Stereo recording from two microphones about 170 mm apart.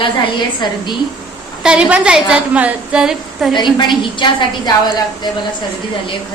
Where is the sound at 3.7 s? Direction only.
25° left (ahead or behind).